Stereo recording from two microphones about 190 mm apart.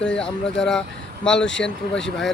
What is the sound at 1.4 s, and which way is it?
Speech, 75° left (ahead or behind).